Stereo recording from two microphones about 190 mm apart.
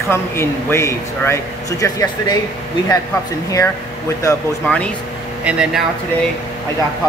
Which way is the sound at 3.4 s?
15° left (ahead or behind).